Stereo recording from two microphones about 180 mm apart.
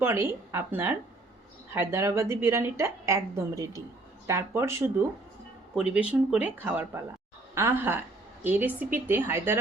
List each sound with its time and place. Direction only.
0.0 s a woman's voice: 15° right (ahead or behind)
5.7 s a woman's voice: 5° right (ahead or behind)